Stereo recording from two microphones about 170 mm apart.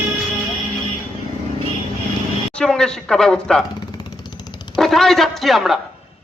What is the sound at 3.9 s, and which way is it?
Dog, 25° left (ahead or behind).